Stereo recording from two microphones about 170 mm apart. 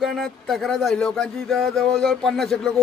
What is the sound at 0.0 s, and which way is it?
A man's voice, centre (ahead or behind).